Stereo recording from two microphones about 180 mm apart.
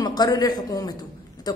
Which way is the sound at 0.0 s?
20° left (ahead or behind).